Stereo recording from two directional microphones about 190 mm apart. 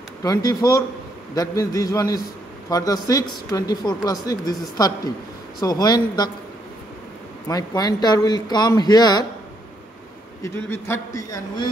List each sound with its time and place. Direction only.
0.2 s speech: 20° left (ahead or behind)
7.4 s speech: 20° left (ahead or behind)
10.4 s a man's voice: 15° left (ahead or behind)